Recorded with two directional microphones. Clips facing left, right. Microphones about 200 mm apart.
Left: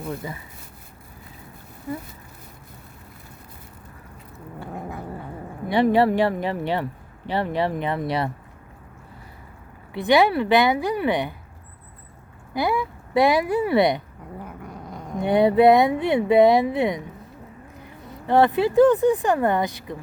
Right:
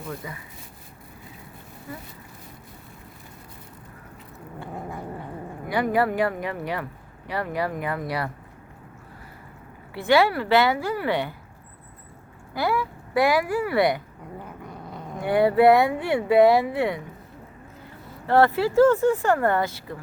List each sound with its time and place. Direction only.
0.2 s speech: 30° left (ahead or behind)
5.6 s speech: 25° left (ahead or behind)
9.9 s a woman's voice: 20° left (ahead or behind)
12.5 s speech: 15° left (ahead or behind)
14.3 s cat: 10° left (ahead or behind)
15.2 s speech: 20° left (ahead or behind)